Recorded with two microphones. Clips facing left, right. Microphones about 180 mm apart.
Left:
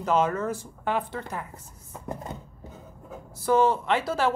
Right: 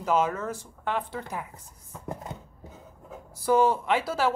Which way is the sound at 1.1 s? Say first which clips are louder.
Left 1 dB; 10° right (ahead or behind).